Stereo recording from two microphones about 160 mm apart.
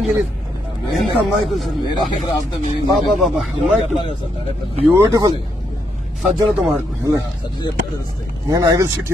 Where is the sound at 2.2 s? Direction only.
30° left (ahead or behind).